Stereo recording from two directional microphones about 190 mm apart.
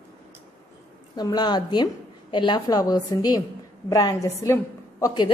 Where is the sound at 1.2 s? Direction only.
20° left (ahead or behind).